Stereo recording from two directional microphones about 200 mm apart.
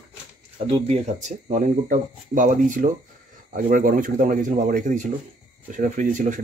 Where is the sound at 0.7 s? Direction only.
30° right (ahead or behind).